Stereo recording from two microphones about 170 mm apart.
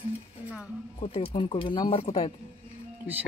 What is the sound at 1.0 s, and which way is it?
Speech, 35° left (ahead or behind).